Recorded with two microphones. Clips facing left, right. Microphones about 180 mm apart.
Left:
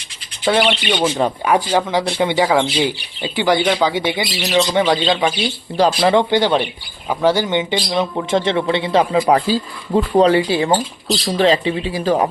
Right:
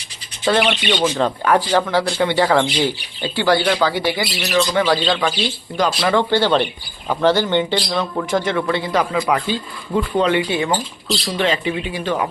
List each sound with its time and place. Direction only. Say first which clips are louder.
0.5 s speech: left 1 dB; 10° left (ahead or behind); by 6.2 s 25° left (ahead or behind)
6.3 s a man's voice: left 1 dB; 15° left (ahead or behind); by 12.3 s 35° left (ahead or behind)